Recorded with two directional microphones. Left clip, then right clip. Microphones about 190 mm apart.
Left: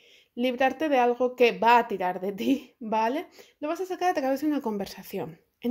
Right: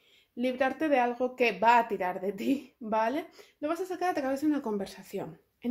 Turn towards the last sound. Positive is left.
turn(degrees=45)  # may be behind; listen again after turning